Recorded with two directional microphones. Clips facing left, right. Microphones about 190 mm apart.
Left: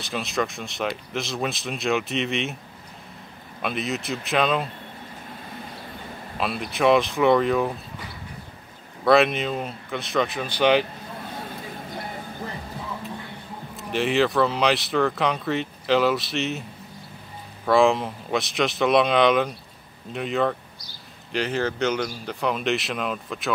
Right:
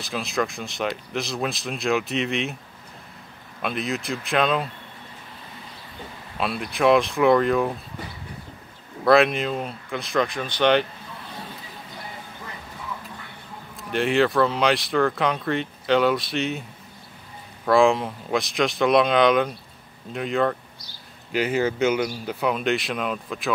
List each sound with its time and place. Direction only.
0.0 s speech: centre (ahead or behind)
3.6 s speech: centre (ahead or behind)
6.4 s speech: centre (ahead or behind)
9.0 s speech: centre (ahead or behind)
11.9 s a sound: 40° left (ahead or behind)
13.7 s speech: centre (ahead or behind)
17.6 s speech: centre (ahead or behind)